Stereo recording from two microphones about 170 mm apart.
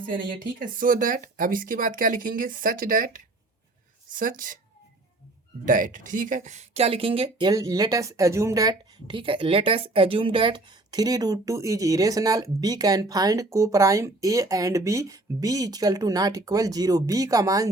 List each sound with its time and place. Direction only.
0.8 s speech: 50° right (ahead or behind)
5.6 s speech: 50° right (ahead or behind); by 17.7 s 20° right (ahead or behind)